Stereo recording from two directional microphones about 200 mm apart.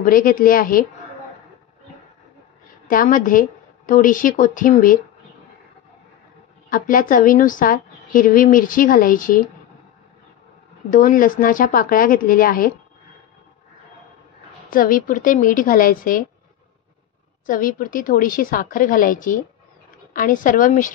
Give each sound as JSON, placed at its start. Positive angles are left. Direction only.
{"t": 0.0, "sound": "a woman's voice", "side_deg": 45}
{"t": 2.9, "sound": "a woman's voice", "side_deg": 40}
{"t": 6.7, "sound": "a woman's voice", "side_deg": 45}
{"t": 10.9, "sound": "a woman's voice", "side_deg": 45}
{"t": 14.7, "sound": "a woman's voice", "side_deg": 45}
{"t": 17.5, "sound": "a woman's voice", "side_deg": 45}